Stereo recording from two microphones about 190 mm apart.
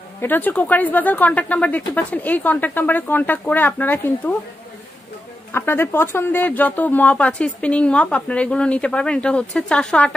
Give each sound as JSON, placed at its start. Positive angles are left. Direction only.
{"t": 0.2, "sound": "speech", "side_deg": 10}
{"t": 5.5, "sound": "speech", "side_deg": 10}